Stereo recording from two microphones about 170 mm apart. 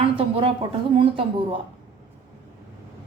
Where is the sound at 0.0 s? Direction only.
30° right (ahead or behind).